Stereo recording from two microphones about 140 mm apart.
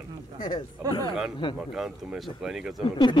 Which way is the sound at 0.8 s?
25° right (ahead or behind).